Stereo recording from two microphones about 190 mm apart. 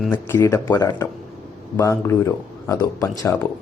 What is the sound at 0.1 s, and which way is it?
A man's voice, 15° left (ahead or behind).